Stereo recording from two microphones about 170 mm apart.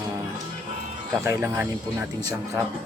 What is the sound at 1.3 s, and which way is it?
Speech, 10° right (ahead or behind).